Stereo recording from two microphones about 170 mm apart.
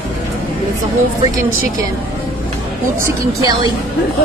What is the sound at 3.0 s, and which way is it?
Speech, 20° right (ahead or behind).